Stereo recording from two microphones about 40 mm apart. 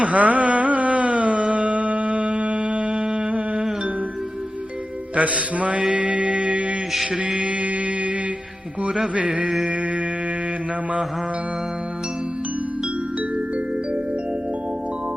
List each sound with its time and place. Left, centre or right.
0.0 s carnatic music: right
5.1 s a man's voice: right
5.9 s music: right
6.9 s mantra: centre
7.2 s mantra: right
9.1 s a man's voice: right